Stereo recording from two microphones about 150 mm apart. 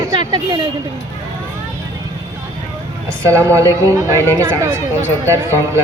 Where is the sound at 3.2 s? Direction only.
20° right (ahead or behind).